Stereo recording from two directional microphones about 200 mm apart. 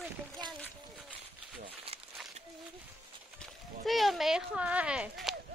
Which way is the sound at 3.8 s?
Centre (ahead or behind).